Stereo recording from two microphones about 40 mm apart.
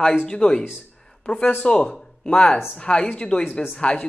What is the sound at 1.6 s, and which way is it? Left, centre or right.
Speech, left.